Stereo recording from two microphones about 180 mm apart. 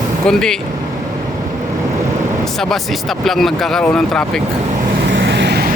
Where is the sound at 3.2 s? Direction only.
Centre (ahead or behind).